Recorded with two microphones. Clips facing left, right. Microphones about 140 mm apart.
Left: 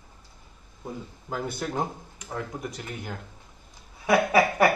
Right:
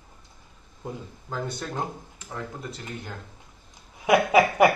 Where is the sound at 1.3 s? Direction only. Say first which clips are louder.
Left 1 dB; 10° left (ahead or behind).